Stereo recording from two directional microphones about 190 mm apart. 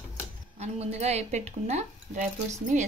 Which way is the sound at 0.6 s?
35° right (ahead or behind).